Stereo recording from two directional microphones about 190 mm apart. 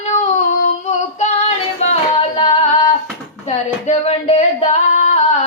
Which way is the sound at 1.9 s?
30° left (ahead or behind).